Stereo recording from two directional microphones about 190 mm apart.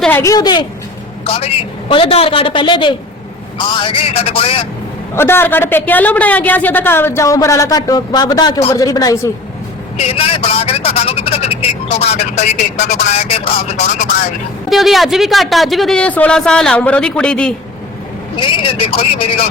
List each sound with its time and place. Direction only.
0.0 s a woman's voice: 15° left (ahead or behind); by 4.6 s 30° left (ahead or behind)
5.1 s a woman's voice: 10° left (ahead or behind)
10.0 s speech: 30° left (ahead or behind)
14.7 s speech: centre (ahead or behind)
18.3 s a woman's voice: 25° left (ahead or behind)